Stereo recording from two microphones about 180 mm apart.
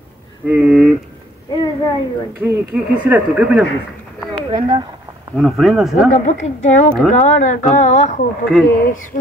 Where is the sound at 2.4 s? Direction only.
10° right (ahead or behind).